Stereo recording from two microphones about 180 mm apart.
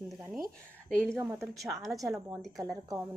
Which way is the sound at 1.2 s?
15° right (ahead or behind).